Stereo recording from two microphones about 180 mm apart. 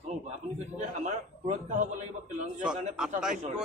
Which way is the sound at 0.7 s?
40° right (ahead or behind).